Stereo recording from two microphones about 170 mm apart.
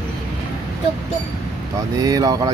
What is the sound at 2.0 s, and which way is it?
Speech, 20° right (ahead or behind).